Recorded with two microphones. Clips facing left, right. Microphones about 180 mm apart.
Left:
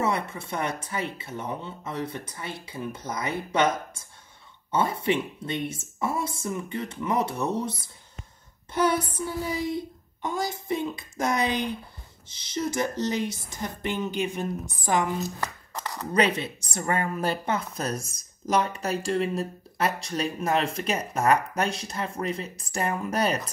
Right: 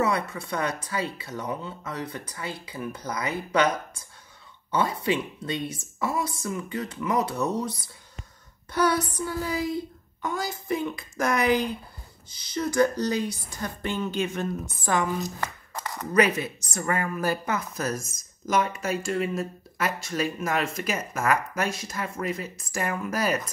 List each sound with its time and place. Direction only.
0.0 s speech: 25° left (ahead or behind)
8.7 s speech: 25° left (ahead or behind)
16.1 s speech: 30° left (ahead or behind)